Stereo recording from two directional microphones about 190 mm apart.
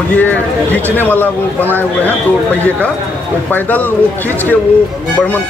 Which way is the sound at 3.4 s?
10° left (ahead or behind).